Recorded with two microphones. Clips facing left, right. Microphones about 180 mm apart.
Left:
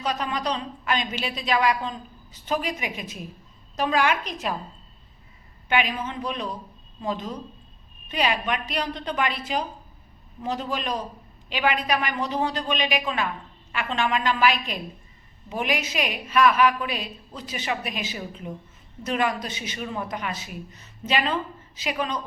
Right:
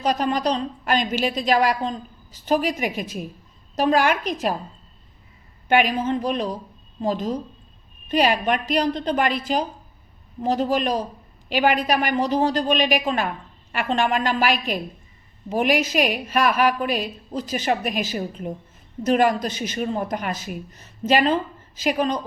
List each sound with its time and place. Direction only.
0.0 s a woman's voice: 40° right (ahead or behind)
5.6 s a woman's voice: 45° right (ahead or behind)